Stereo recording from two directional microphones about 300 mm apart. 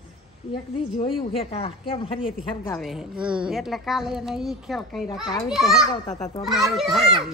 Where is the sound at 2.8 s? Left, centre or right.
Centre.